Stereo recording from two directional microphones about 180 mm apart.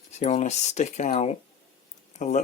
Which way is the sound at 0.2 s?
40° left (ahead or behind).